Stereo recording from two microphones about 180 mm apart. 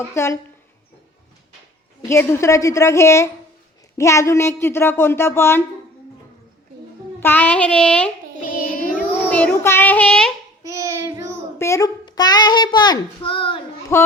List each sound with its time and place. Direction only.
0.0 s speech: 15° left (ahead or behind)
2.0 s speech: 15° left (ahead or behind)
7.2 s speech: 10° left (ahead or behind)
8.4 s child singing: 50° left (ahead or behind)
9.1 s speech: 10° left (ahead or behind)
10.7 s child singing: 15° right (ahead or behind)
11.5 s a child's voice: 15° left (ahead or behind)
13.9 s speech: 15° left (ahead or behind)